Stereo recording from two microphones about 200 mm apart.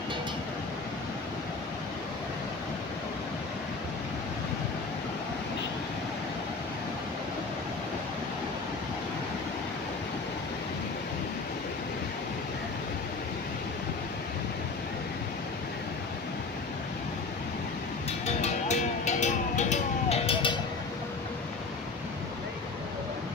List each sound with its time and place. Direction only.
18.2 s vehicle: 35° left (ahead or behind)